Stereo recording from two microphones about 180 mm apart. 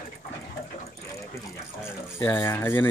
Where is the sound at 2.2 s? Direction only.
15° left (ahead or behind).